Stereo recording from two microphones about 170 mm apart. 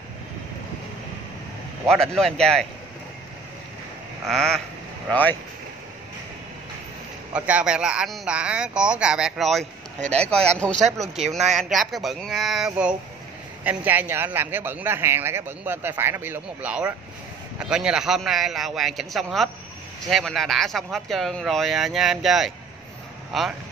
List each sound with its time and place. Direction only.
1.9 s speech: centre (ahead or behind)
4.3 s speech: centre (ahead or behind)
7.3 s speech: 10° right (ahead or behind)
9.9 s speech: 45° right (ahead or behind)
11.0 s a man's voice: centre (ahead or behind)